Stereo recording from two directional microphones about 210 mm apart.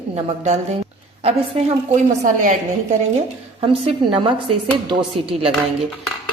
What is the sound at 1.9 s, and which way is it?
Speech, 35° right (ahead or behind).